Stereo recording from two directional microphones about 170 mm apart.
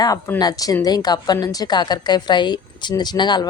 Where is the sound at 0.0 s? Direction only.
20° left (ahead or behind).